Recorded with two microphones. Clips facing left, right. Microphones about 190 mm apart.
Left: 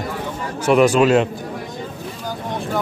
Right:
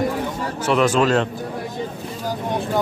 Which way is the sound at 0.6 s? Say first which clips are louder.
Left 4 dB; 10° left (ahead or behind).